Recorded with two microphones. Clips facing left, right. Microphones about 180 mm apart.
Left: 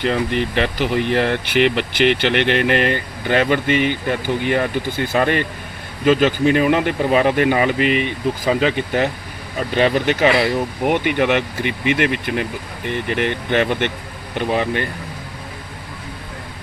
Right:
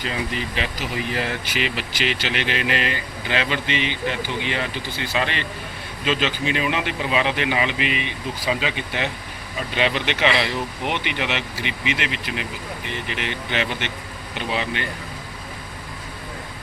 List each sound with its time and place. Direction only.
0.0 s speech: 65° left (ahead or behind)